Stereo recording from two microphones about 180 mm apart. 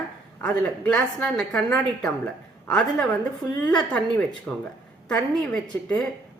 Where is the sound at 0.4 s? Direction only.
5° left (ahead or behind).